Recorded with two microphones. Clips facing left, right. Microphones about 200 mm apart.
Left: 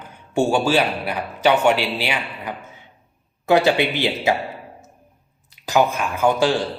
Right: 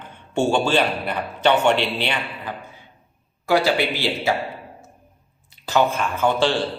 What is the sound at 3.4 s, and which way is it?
Speech, 20° left (ahead or behind).